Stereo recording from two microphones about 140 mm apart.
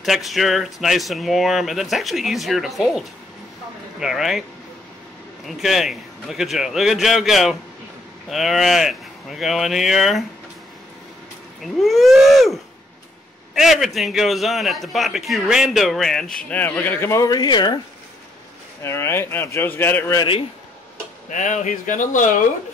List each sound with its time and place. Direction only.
0.0 s a man's voice: centre (ahead or behind)
5.5 s a man's voice: centre (ahead or behind)
11.6 s a man's voice: centre (ahead or behind)
13.6 s a man's voice: centre (ahead or behind); by 17.7 s 30° left (ahead or behind)
18.8 s speech: 20° left (ahead or behind)
20.2 s a man's voice: 40° left (ahead or behind)
21.3 s speech: 60° left (ahead or behind)